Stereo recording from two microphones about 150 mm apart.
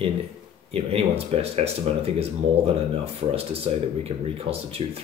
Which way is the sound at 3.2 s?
40° right (ahead or behind).